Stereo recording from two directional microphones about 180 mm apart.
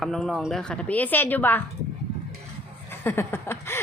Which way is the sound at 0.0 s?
Centre (ahead or behind).